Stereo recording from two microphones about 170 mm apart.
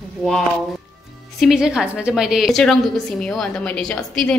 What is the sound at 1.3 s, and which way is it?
A woman's voice, centre (ahead or behind).